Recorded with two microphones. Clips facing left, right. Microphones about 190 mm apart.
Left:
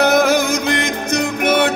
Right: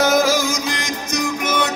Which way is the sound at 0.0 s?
60° left (ahead or behind).